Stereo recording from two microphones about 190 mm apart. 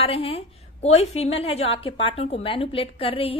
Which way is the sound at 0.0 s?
30° left (ahead or behind).